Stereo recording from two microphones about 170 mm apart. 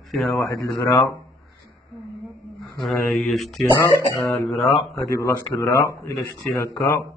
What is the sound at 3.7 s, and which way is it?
Speech, 20° left (ahead or behind).